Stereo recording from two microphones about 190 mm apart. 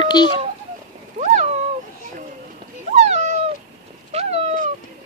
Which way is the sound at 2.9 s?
35° right (ahead or behind).